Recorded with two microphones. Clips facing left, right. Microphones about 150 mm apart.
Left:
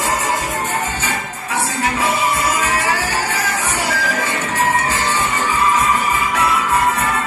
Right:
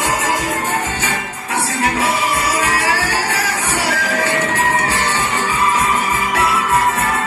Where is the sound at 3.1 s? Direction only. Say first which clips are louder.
Right 1 dB; 80° right.